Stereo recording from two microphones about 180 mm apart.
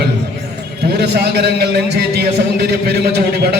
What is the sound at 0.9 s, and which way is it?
A man's voice, 70° right (ahead or behind).